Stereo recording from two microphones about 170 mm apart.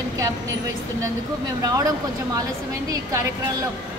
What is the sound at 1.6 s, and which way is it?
Speech, 20° right (ahead or behind).